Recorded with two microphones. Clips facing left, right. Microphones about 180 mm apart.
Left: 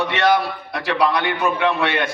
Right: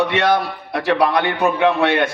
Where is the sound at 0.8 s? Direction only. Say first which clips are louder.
Right 3 dB; 55° right (ahead or behind).